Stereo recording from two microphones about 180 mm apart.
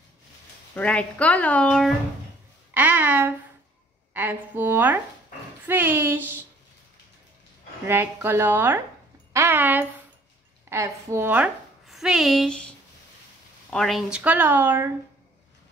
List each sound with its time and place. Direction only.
0.7 s a woman's voice: 5° left (ahead or behind)
2.7 s speech: 10° right (ahead or behind)
7.8 s a woman's voice: 10° right (ahead or behind)